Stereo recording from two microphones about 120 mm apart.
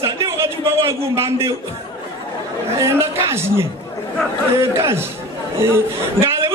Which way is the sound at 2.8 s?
20° right (ahead or behind).